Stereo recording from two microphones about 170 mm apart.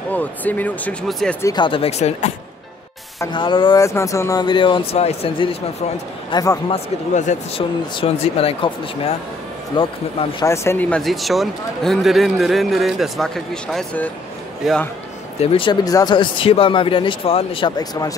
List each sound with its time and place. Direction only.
0.1 s speech: 10° left (ahead or behind)
1.4 s speech: 25° left (ahead or behind)
3.2 s speech: 25° left (ahead or behind)
6.3 s speech: 20° left (ahead or behind)
6.7 s speech: 40° left (ahead or behind)
10.4 s speech: 15° left (ahead or behind); by 14.8 s centre (ahead or behind)
15.4 s speech: 30° left (ahead or behind)